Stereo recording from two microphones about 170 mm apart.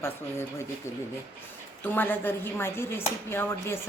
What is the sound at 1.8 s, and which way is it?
A woman's voice, 10° left (ahead or behind).